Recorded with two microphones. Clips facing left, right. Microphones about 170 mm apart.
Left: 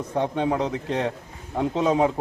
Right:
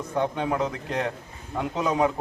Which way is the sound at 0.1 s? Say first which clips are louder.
Left 2 dB; 25° left (ahead or behind).